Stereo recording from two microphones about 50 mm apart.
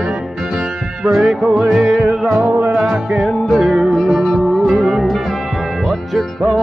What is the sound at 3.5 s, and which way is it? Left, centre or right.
Music, centre.